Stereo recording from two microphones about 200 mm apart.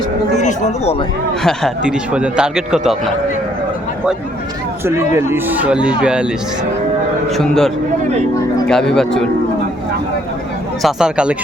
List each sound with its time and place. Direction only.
0.3 s speech: 35° left (ahead or behind)
1.5 s speech: centre (ahead or behind)
5.1 s speech: 10° right (ahead or behind)
7.3 s speech: centre (ahead or behind)
10.8 s speech: 5° right (ahead or behind)